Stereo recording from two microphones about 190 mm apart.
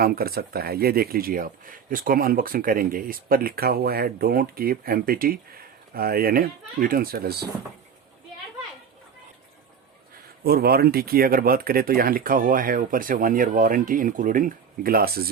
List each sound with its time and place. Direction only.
0.0 s speech: 50° right (ahead or behind)
10.4 s speech: 55° right (ahead or behind)